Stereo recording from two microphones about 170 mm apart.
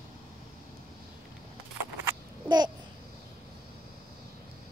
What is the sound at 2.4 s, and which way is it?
Babbling, 25° right (ahead or behind).